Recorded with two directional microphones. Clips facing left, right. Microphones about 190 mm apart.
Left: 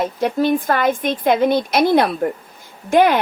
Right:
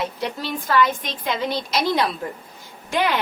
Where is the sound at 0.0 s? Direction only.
50° left (ahead or behind).